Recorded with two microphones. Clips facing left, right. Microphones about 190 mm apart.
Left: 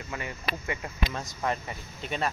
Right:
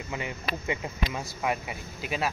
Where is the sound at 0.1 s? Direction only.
20° right (ahead or behind).